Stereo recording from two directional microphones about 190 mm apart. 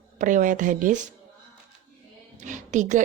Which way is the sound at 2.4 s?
40° right (ahead or behind).